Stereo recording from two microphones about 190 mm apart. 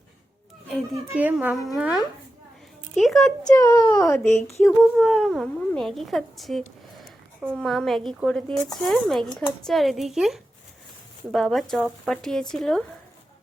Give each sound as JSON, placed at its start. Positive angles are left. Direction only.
{"t": 0.7, "sound": "a child's voice", "side_deg": -10}
{"t": 3.5, "sound": "speech", "side_deg": 15}
{"t": 4.6, "sound": "speech", "side_deg": 0}